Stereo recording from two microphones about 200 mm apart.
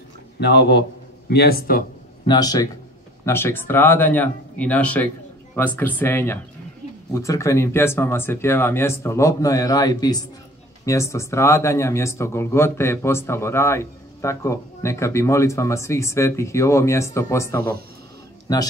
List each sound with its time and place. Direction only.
0.4 s speech: 55° left (ahead or behind)
2.2 s speech: 20° left (ahead or behind)